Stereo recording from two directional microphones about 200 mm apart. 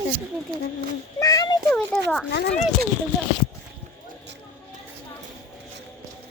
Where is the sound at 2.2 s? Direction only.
60° left (ahead or behind).